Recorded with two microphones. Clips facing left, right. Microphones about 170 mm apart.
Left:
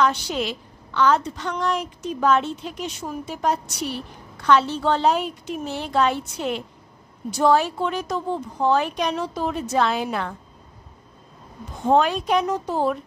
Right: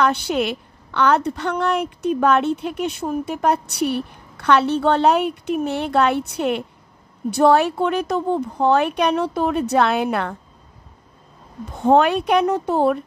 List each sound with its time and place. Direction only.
0.0 s a woman's voice: 60° right (ahead or behind)
11.8 s a woman's voice: 60° right (ahead or behind)